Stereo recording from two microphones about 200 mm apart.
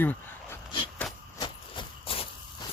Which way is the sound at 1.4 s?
25° left (ahead or behind).